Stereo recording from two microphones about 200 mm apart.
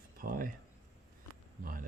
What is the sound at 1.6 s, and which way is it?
Speech, 45° right (ahead or behind).